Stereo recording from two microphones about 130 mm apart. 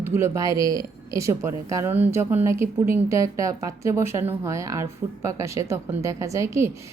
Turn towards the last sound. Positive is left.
turn(degrees=-20)  # may be behind; listen again after turning